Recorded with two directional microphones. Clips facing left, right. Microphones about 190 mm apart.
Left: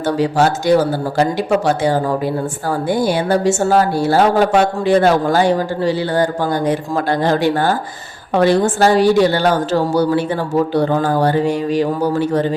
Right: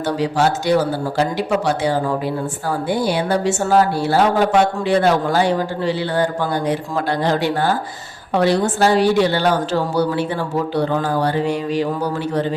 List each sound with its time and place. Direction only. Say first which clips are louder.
0.0 s speech: left 3 dB; 45° left (ahead or behind)